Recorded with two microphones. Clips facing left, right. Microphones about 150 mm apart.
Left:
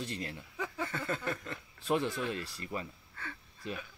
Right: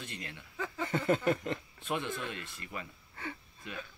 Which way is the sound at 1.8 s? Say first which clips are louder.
Left 10 dB; 35° left (ahead or behind).